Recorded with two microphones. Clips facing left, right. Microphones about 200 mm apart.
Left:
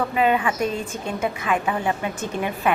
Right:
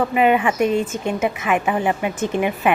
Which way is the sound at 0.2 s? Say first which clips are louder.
Right 4 dB; 15° right (ahead or behind).